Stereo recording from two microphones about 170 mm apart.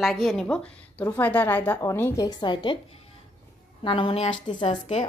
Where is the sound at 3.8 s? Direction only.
30° left (ahead or behind).